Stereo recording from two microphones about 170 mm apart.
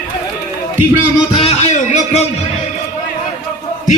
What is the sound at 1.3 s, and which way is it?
Music, 35° left (ahead or behind).